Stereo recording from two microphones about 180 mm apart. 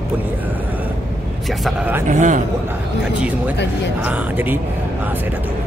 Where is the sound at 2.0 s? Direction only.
45° right (ahead or behind).